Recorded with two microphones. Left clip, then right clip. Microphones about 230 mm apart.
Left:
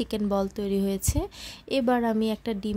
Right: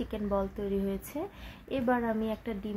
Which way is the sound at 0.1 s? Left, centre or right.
Left.